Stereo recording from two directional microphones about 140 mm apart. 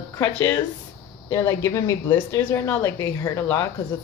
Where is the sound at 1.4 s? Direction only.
20° left (ahead or behind).